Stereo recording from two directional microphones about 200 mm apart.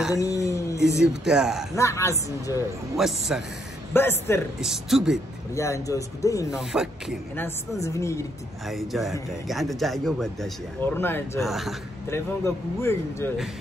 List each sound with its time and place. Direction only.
0.1 s a sound: 15° left (ahead or behind)
1.2 s speech: 5° right (ahead or behind)
1.8 s speech: 15° left (ahead or behind)
3.0 s speech: centre (ahead or behind)
3.9 s speech: 10° left (ahead or behind)
4.6 s speech: centre (ahead or behind)
5.5 s speech: 15° left (ahead or behind)
6.5 s speech: 5° right (ahead or behind)
7.8 s speech: 15° left (ahead or behind)
8.6 s speech: centre (ahead or behind)
11.4 s speech: centre (ahead or behind)
12.1 s speech: 15° left (ahead or behind)